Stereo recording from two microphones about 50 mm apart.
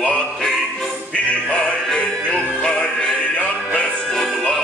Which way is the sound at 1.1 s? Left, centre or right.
Left.